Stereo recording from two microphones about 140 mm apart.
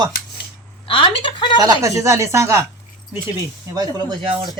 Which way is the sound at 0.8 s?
35° left (ahead or behind).